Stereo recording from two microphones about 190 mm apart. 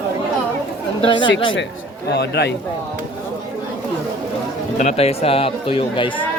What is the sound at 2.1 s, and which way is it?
Speech, 60° left (ahead or behind).